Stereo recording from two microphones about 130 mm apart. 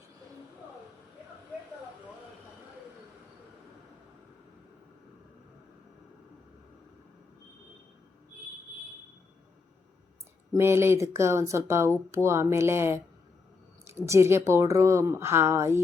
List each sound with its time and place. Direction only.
10.5 s speech: 20° right (ahead or behind)